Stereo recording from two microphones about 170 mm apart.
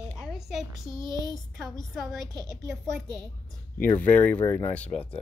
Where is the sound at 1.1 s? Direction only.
20° left (ahead or behind).